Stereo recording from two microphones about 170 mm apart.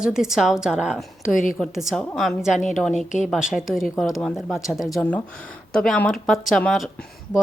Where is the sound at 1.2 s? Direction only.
50° left (ahead or behind).